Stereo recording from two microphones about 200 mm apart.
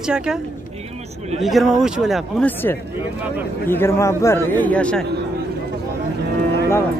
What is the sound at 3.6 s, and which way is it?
A man's voice, 10° left (ahead or behind).